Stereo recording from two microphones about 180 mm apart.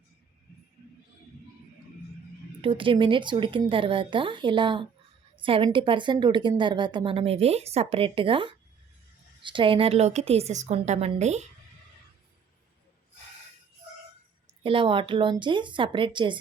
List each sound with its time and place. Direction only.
2.6 s a woman's voice: 30° right (ahead or behind)
14.6 s a woman's voice: 30° right (ahead or behind)